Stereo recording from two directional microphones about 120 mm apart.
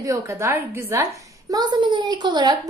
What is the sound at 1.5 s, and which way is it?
A woman's voice, 35° right (ahead or behind).